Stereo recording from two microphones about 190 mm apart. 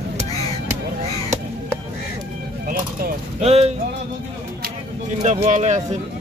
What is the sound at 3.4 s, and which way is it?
Speech, 35° right (ahead or behind).